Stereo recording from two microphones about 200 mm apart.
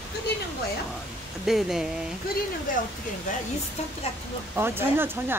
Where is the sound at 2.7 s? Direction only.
45° left (ahead or behind).